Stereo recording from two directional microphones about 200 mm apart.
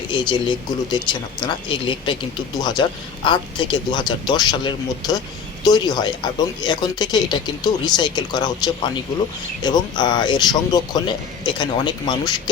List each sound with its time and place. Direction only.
0.1 s speech: 25° left (ahead or behind)